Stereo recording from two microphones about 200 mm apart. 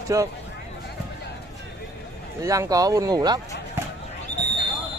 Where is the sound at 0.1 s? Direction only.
15° right (ahead or behind).